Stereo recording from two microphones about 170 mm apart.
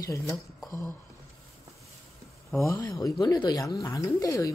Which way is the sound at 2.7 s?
20° left (ahead or behind).